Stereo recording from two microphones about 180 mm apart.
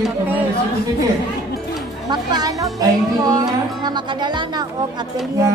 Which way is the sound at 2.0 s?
20° right (ahead or behind).